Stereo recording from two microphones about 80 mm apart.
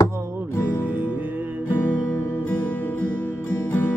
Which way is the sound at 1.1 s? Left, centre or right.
Right.